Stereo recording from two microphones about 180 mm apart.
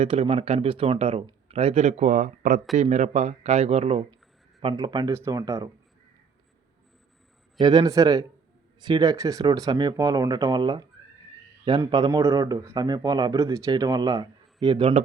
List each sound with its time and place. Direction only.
0.0 s speech: 30° right (ahead or behind)
4.6 s a man's voice: 25° right (ahead or behind)
7.6 s a man's voice: 25° right (ahead or behind)